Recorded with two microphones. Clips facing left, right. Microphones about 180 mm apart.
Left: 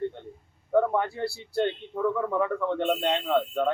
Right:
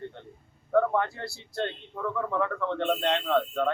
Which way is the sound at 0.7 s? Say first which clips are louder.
Left 1 dB; 10° left (ahead or behind).